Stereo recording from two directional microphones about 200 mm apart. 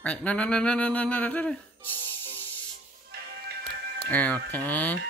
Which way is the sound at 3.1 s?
55° right (ahead or behind).